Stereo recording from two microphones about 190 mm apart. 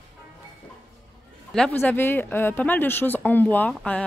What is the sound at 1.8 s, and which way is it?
Speech, 10° left (ahead or behind).